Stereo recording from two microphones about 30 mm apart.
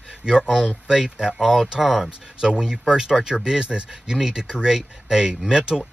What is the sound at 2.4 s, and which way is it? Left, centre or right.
Speech, right.